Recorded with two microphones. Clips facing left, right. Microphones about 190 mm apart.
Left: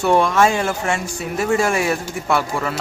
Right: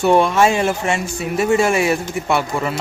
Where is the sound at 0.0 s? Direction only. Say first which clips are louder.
Right 2 dB; 20° right (ahead or behind).